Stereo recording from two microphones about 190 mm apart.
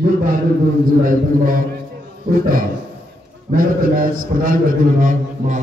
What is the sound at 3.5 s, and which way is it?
A man's voice, 50° right (ahead or behind).